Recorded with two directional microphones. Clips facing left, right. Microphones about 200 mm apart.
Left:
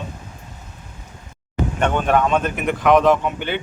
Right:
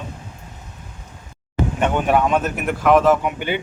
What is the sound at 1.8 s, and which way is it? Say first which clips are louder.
Speech: even; 10° right (ahead or behind).